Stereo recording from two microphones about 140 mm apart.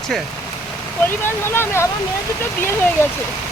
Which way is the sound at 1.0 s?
15° left (ahead or behind).